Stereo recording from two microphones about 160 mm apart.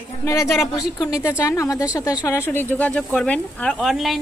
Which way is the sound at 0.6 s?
Centre (ahead or behind).